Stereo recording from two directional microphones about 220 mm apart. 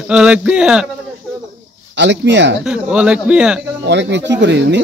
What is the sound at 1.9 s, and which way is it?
Speech, 55° right (ahead or behind).